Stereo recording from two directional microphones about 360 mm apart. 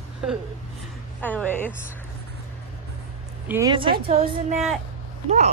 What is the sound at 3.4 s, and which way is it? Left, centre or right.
A woman's voice, centre.